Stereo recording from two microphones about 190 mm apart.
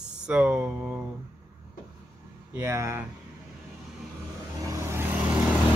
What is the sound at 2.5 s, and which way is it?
Speech, 15° right (ahead or behind).